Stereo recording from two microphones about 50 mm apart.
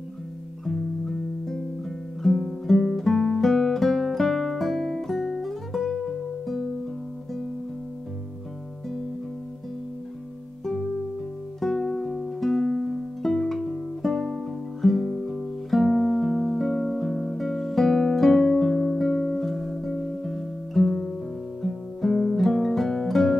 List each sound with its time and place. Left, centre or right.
0.7 s music: centre
2.2 s guitar: centre
11.6 s music: centre